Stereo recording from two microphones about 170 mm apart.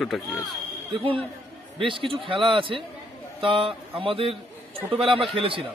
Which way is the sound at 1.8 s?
30° right (ahead or behind).